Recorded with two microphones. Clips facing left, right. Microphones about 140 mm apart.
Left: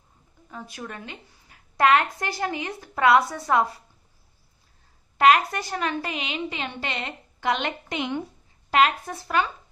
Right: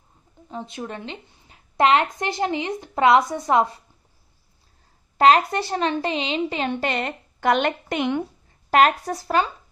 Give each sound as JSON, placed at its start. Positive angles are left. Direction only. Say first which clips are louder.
{"t": 0.5, "sound": "a woman's voice", "louder": "right 5 dB", "side_deg": -25}
{"t": 5.1, "sound": "a woman's voice", "louder": "right 2 dB", "side_deg": -30}
{"t": 8.6, "sound": "a woman's voice", "louder": "right 4 dB", "side_deg": -45}